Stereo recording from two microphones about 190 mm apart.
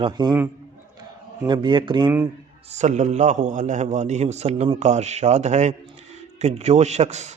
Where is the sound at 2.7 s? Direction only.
40° right (ahead or behind).